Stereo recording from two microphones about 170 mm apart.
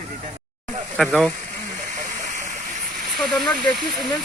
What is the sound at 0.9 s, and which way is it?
Speech, centre (ahead or behind).